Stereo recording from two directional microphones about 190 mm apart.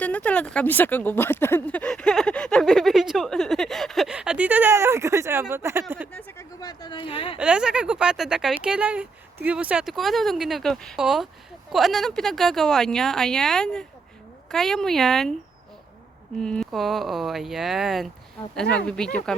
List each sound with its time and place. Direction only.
0.0 s speech: 10° left (ahead or behind); by 5.8 s 15° right (ahead or behind)
6.1 s a sound: 10° left (ahead or behind)
6.6 s speech: 20° left (ahead or behind)
7.3 s speech: 5° right (ahead or behind)
16.4 s speech: centre (ahead or behind)